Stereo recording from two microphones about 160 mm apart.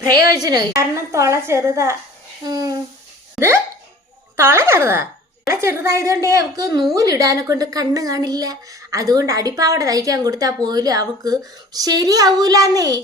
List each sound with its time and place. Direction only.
0.4 s speech: 25° right (ahead or behind)
3.4 s hiccup: centre (ahead or behind)
4.4 s speech: 15° right (ahead or behind)